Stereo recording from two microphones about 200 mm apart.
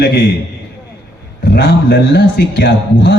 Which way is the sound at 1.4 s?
55° left (ahead or behind).